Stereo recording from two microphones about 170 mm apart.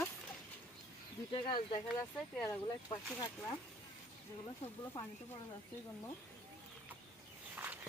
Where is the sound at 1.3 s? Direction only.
30° left (ahead or behind).